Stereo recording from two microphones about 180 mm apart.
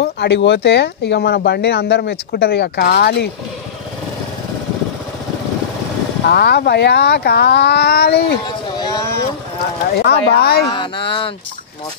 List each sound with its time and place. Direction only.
0.0 s speech: 70° left (ahead or behind)
6.2 s speech: 65° left (ahead or behind)
8.5 s a sound: 25° left (ahead or behind)
9.9 s speech: 65° left (ahead or behind)
10.7 s speech: 30° left (ahead or behind)